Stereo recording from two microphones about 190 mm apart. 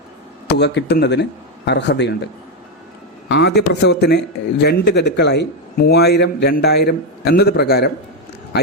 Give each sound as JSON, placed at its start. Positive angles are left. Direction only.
{"t": 0.4, "sound": "a man's voice", "side_deg": 65}